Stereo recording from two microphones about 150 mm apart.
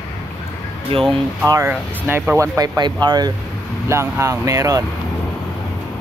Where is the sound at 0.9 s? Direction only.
40° right (ahead or behind).